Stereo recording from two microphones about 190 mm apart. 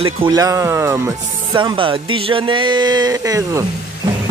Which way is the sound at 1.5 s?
25° right (ahead or behind).